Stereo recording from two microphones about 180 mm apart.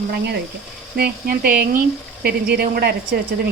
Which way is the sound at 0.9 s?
55° right (ahead or behind).